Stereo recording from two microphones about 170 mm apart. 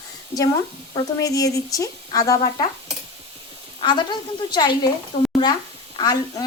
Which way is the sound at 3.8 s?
25° left (ahead or behind).